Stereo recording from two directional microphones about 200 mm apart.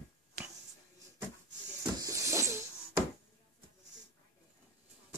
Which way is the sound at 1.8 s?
15° right (ahead or behind).